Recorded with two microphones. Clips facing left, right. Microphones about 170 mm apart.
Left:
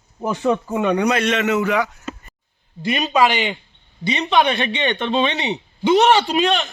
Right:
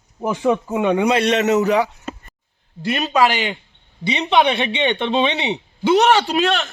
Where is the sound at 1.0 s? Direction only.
30° right (ahead or behind).